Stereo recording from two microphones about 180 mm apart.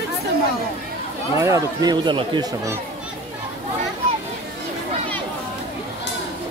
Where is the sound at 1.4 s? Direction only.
15° right (ahead or behind).